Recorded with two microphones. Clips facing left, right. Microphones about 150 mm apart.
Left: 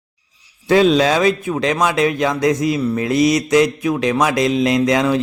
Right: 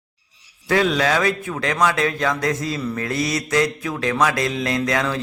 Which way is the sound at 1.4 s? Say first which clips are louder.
Left 3 dB; 20° left (ahead or behind).